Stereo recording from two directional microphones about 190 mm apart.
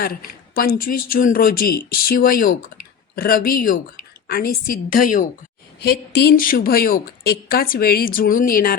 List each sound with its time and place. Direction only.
0.0 s a woman's voice: 50° left (ahead or behind)